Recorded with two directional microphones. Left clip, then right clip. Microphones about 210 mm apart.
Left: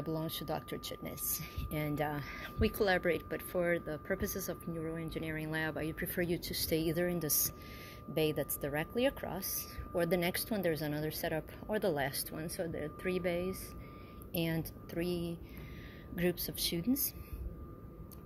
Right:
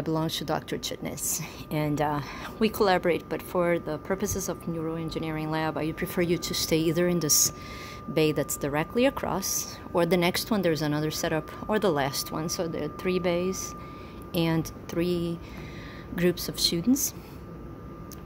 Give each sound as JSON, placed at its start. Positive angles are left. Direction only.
{"t": 0.0, "sound": "speech", "side_deg": -10}